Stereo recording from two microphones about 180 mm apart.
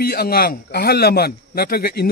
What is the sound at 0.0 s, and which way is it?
A man's voice, 60° left (ahead or behind).